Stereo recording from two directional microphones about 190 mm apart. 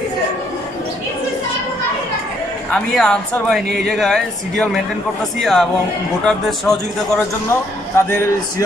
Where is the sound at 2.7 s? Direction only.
5° left (ahead or behind).